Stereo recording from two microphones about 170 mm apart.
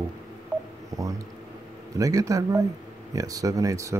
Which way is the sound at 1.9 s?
20° right (ahead or behind).